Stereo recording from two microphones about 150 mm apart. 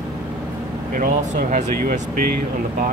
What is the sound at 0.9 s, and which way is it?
Speech, 60° right (ahead or behind).